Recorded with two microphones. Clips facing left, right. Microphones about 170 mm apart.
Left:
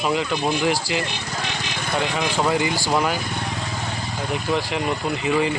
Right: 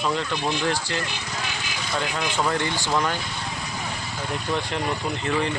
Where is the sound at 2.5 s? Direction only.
5° left (ahead or behind).